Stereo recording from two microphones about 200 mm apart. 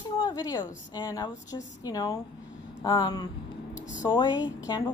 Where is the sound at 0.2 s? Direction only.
20° left (ahead or behind).